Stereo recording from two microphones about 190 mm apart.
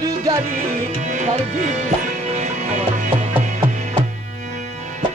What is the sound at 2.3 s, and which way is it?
Music, 40° right (ahead or behind).